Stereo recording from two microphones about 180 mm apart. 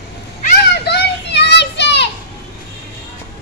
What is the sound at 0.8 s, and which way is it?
Children playing, 65° left (ahead or behind).